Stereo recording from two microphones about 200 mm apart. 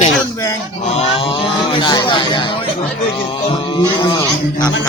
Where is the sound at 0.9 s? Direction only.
25° left (ahead or behind).